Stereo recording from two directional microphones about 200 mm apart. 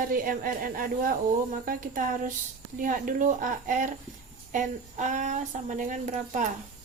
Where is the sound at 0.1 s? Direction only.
45° right (ahead or behind).